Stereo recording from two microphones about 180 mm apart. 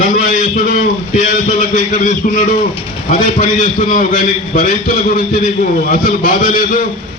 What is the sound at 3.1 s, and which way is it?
A man's voice, 45° left (ahead or behind).